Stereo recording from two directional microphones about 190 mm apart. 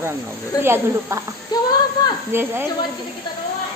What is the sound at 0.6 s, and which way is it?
Speech, 10° right (ahead or behind).